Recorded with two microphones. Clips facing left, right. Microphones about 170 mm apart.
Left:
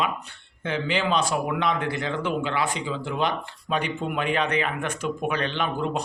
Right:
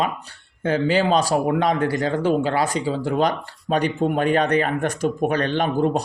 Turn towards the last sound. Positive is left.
turn(degrees=-40)  # may be behind; listen again after turning